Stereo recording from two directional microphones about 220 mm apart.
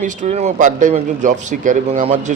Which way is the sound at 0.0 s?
30° right (ahead or behind).